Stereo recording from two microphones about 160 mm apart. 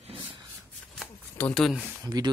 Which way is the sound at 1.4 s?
Centre (ahead or behind).